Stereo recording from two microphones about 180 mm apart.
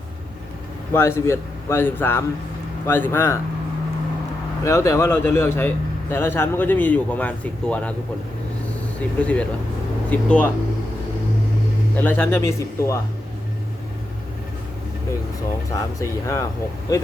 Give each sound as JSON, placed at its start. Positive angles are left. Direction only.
{"t": 0.9, "sound": "a man's voice", "side_deg": 15}
{"t": 4.6, "sound": "a man's voice", "side_deg": 15}
{"t": 9.0, "sound": "a man's voice", "side_deg": 5}
{"t": 11.9, "sound": "a man's voice", "side_deg": 10}
{"t": 16.0, "sound": "a man's voice", "side_deg": 15}